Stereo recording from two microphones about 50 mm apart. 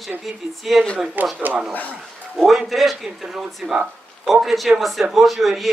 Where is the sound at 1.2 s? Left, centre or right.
Right.